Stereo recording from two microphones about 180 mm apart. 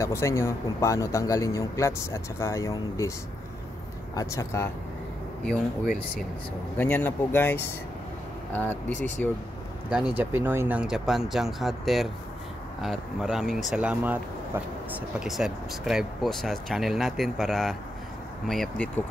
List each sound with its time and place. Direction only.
0.0 s a man's voice: 15° left (ahead or behind)
4.1 s a man's voice: 20° left (ahead or behind)
6.8 s a man's voice: 10° left (ahead or behind)
9.8 s speech: 5° right (ahead or behind)